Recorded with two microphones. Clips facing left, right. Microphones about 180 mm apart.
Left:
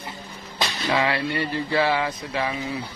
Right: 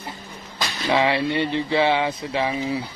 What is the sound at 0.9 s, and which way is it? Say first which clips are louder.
Speech: right 4 dB; 25° right (ahead or behind).